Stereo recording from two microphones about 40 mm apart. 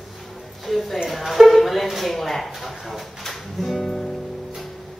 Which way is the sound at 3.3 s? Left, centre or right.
Centre.